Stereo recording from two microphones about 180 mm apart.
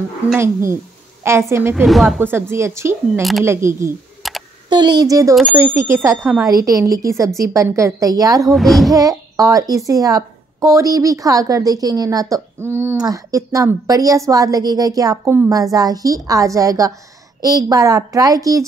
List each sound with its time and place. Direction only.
0.4 s a woman's voice: 15° right (ahead or behind)
1.9 s speech: centre (ahead or behind)
2.2 s a woman's voice: 15° right (ahead or behind)
3.2 s speech: centre (ahead or behind)
3.4 s a woman's voice: 15° right (ahead or behind)
4.2 s a sound: centre (ahead or behind)
4.6 s a woman's voice: 25° right (ahead or behind)
5.3 s speech: centre (ahead or behind)
6.0 s a woman's voice: 15° right (ahead or behind)
8.5 s speech: centre (ahead or behind)
8.9 s a woman's voice: 20° right (ahead or behind)